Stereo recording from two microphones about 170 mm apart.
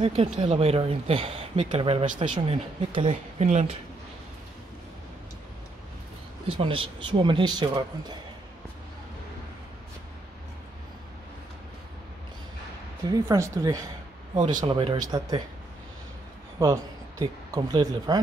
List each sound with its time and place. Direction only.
0.0 s speech: 30° right (ahead or behind)
6.5 s speech: 30° right (ahead or behind)
13.1 s speech: 20° right (ahead or behind)
14.4 s speech: 50° right (ahead or behind)
14.7 s speech: 30° right (ahead or behind)
16.5 s speech: 20° right (ahead or behind)